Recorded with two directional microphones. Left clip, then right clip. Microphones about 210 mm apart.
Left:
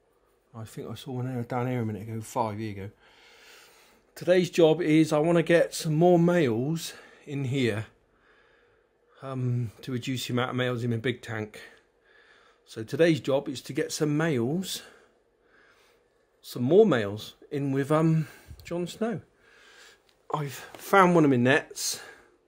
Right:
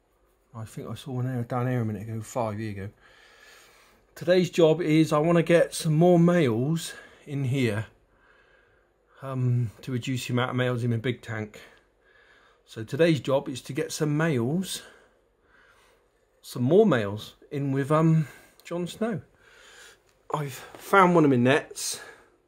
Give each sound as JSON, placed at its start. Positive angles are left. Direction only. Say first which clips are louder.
{"t": 0.5, "sound": "speech", "louder": "even", "side_deg": 5}
{"t": 9.1, "sound": "speech", "louder": "right 2 dB", "side_deg": 5}
{"t": 16.4, "sound": "speech", "louder": "even", "side_deg": 5}